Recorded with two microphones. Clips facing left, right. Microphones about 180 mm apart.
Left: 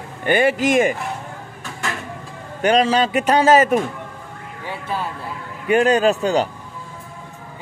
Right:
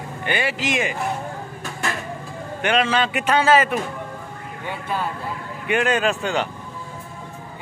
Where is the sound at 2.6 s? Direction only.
40° left (ahead or behind).